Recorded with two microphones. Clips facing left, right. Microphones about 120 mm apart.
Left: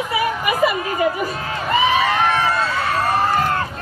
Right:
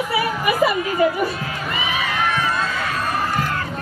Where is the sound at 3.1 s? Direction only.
35° left (ahead or behind).